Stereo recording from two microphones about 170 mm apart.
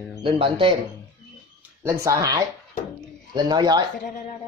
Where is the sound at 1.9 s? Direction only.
20° right (ahead or behind).